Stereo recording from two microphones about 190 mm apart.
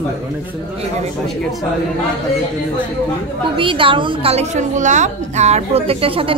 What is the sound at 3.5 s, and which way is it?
A woman's voice, 25° right (ahead or behind).